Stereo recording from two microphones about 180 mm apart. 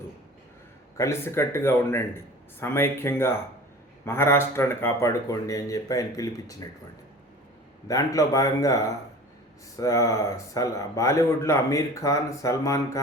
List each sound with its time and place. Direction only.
0.9 s speech: 15° left (ahead or behind)
7.9 s speech: 20° left (ahead or behind)